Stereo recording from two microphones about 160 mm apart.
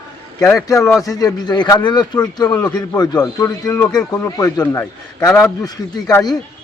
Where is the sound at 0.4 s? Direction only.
20° left (ahead or behind).